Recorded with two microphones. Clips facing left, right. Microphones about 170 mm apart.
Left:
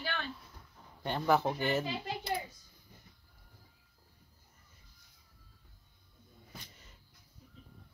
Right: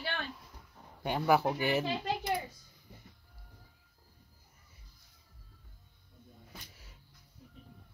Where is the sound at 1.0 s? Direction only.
10° right (ahead or behind).